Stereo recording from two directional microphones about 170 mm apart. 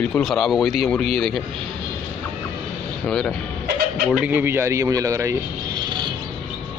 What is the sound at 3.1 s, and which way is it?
Speech, 5° left (ahead or behind).